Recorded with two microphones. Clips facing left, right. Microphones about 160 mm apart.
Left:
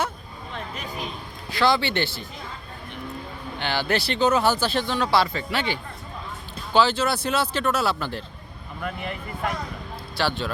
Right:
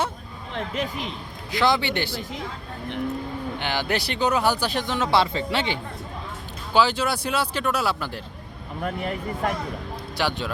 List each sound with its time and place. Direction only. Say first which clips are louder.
0.5 s speech: right 6 dB; 90° right
1.5 s speech: even; 20° right (ahead or behind)
3.6 s speech: left 3 dB; 15° right (ahead or behind)
6.7 s speech: left 1 dB; 10° right (ahead or behind)
8.8 s speech: right 4 dB; 40° right (ahead or behind)
10.2 s speech: left 1 dB; 15° right (ahead or behind)